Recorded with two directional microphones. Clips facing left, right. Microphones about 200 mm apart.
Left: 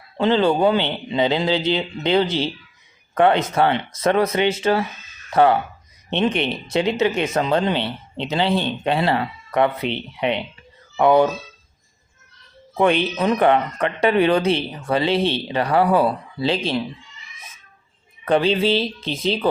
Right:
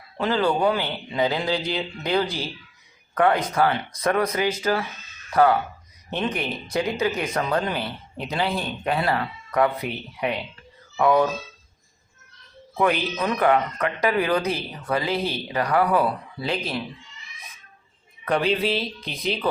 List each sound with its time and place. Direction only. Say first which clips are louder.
0.2 s speech: left 5 dB; 25° left (ahead or behind)
12.7 s speech: left 4 dB; 25° left (ahead or behind)
18.3 s speech: left 5 dB; 30° left (ahead or behind)